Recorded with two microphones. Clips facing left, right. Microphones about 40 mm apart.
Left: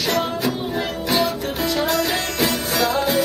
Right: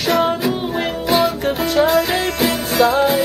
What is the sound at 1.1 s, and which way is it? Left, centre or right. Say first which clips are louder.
Music: right 5 dB; centre.